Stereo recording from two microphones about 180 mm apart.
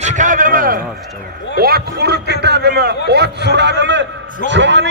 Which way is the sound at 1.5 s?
60° right (ahead or behind).